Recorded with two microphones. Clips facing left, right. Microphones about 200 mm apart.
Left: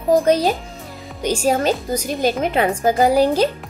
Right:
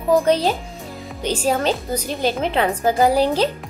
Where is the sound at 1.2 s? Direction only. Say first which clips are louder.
Left 2 dB; 10° left (ahead or behind).